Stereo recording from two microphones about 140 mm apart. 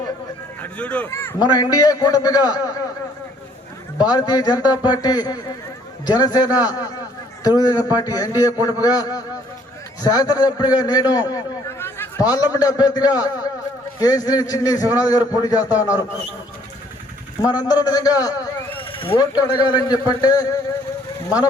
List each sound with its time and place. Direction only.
0.6 s speech: 10° left (ahead or behind)
1.4 s a man's voice: 30° left (ahead or behind)
3.9 s a man's voice: 30° left (ahead or behind)
17.4 s a man's voice: 30° left (ahead or behind)
18.8 s a man's voice: 40° left (ahead or behind)